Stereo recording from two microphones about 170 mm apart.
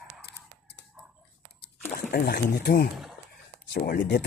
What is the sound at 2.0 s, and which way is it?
Speech, 60° left (ahead or behind).